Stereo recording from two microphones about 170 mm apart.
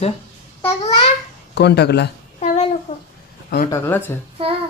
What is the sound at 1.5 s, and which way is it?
Speech, 75° left (ahead or behind).